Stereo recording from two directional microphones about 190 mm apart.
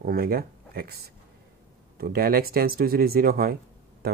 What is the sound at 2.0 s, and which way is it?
Speech, 50° right (ahead or behind).